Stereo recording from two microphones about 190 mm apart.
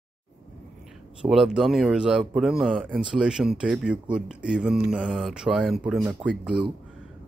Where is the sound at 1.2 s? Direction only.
Centre (ahead or behind).